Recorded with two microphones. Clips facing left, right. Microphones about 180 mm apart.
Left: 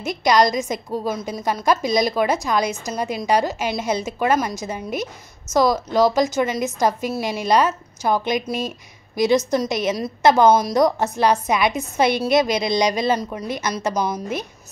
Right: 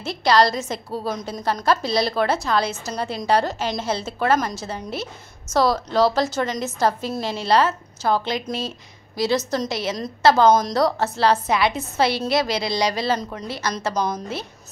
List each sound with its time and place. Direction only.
0.0 s a woman's voice: 15° left (ahead or behind)